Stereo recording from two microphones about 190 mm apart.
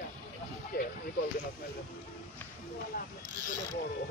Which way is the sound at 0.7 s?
55° left (ahead or behind).